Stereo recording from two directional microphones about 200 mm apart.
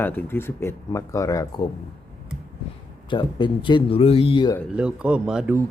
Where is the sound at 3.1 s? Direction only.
25° left (ahead or behind).